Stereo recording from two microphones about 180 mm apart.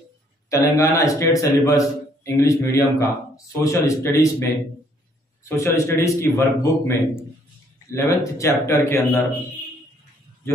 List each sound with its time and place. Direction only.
0.5 s a man's voice: 15° left (ahead or behind)